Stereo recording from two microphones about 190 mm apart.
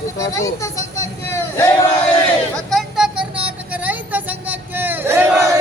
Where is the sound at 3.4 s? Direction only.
10° right (ahead or behind).